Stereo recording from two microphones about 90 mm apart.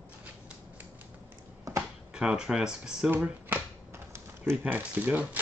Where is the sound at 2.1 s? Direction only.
10° right (ahead or behind).